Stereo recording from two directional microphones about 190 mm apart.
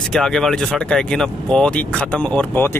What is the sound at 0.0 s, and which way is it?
Speech, centre (ahead or behind).